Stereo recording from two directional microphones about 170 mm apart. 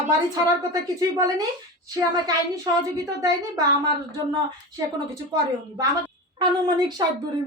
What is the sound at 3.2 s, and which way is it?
A woman's voice, 20° right (ahead or behind).